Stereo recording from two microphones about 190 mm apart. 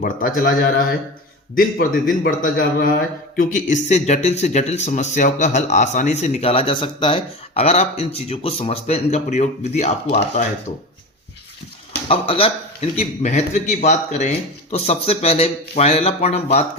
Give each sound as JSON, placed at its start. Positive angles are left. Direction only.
{"t": 0.0, "sound": "a man's voice", "side_deg": 45}
{"t": 1.5, "sound": "a man's voice", "side_deg": 50}
{"t": 12.0, "sound": "speech", "side_deg": 30}